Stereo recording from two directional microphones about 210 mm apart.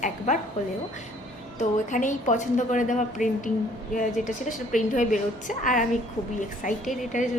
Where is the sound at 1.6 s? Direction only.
35° left (ahead or behind).